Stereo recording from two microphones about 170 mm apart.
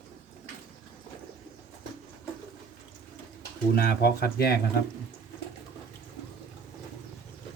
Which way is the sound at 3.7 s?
70° left (ahead or behind).